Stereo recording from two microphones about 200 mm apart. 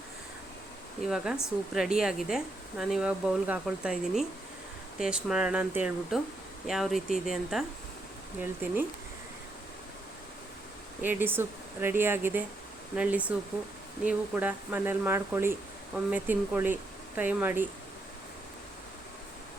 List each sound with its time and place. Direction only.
1.0 s speech: centre (ahead or behind)
11.0 s speech: 10° right (ahead or behind)